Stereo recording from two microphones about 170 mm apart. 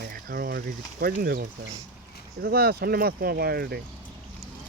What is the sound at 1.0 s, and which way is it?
Speech, 65° right (ahead or behind).